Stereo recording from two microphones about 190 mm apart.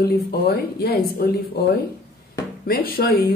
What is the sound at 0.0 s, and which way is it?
Speech, 55° left (ahead or behind).